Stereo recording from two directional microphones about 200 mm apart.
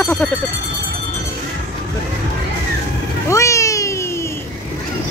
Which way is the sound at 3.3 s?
15° left (ahead or behind).